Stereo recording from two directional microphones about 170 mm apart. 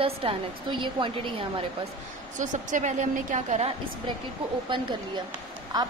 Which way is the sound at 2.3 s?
45° right (ahead or behind).